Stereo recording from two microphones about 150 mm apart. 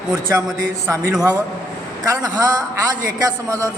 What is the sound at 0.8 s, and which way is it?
A man's voice, 20° right (ahead or behind).